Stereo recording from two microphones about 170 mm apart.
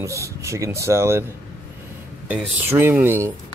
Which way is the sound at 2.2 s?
10° right (ahead or behind).